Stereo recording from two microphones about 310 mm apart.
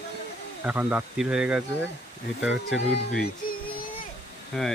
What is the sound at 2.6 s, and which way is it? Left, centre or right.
Speech, left.